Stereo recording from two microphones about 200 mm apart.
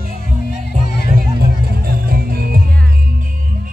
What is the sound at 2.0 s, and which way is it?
Music, 50° right (ahead or behind).